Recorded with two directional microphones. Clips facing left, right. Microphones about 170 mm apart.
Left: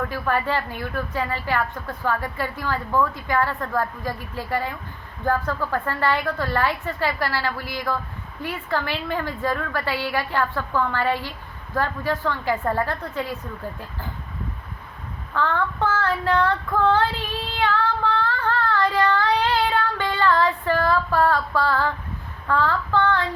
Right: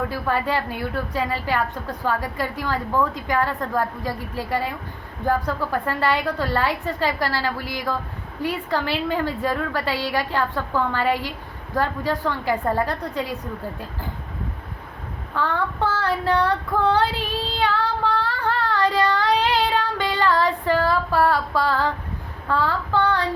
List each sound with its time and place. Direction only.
0.1 s a woman's voice: 15° right (ahead or behind)
15.4 s child singing: 15° right (ahead or behind)
22.4 s a woman's voice: 15° right (ahead or behind)